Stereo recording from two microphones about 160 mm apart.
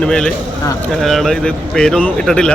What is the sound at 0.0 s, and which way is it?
A man's voice, 5° left (ahead or behind).